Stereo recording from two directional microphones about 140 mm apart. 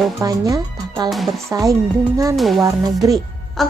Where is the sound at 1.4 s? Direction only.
25° right (ahead or behind).